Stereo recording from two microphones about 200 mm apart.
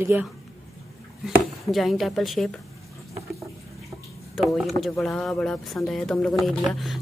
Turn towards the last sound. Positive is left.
turn(degrees=0)  # may be behind; listen again after turning